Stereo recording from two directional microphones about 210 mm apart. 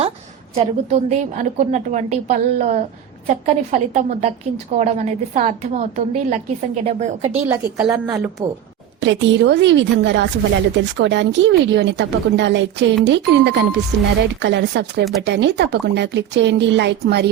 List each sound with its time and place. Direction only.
0.5 s a woman's voice: 30° right (ahead or behind)
7.4 s a woman's voice: 10° right (ahead or behind)
9.0 s a woman's voice: 60° right (ahead or behind)